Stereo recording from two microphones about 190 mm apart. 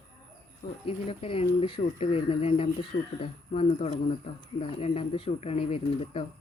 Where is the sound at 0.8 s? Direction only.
30° left (ahead or behind).